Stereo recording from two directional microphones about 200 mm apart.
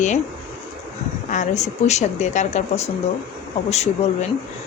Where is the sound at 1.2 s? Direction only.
35° left (ahead or behind).